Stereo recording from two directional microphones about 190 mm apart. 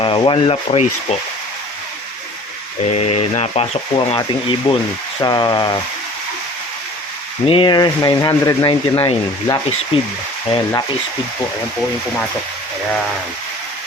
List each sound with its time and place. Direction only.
0.0 s speech: 25° left (ahead or behind)
2.9 s speech: 35° left (ahead or behind)
7.4 s speech: 25° left (ahead or behind)